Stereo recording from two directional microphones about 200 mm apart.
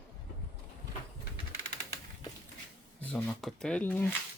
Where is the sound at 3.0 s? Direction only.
5° left (ahead or behind).